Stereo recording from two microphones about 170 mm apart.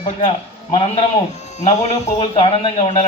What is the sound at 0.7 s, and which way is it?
Speech, 35° left (ahead or behind).